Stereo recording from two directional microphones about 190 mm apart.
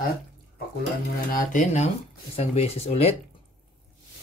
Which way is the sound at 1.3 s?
40° left (ahead or behind).